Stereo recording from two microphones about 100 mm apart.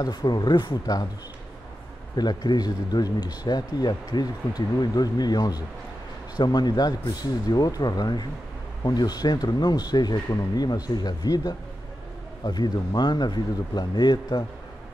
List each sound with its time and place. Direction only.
0.0 s speech: 45° left (ahead or behind)
2.1 s speech: 45° left (ahead or behind)